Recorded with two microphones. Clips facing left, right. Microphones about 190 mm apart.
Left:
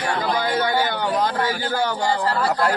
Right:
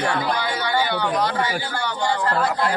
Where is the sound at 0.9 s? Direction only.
45° left (ahead or behind).